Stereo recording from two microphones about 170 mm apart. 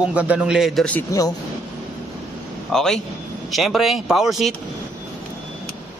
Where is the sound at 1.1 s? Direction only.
20° left (ahead or behind).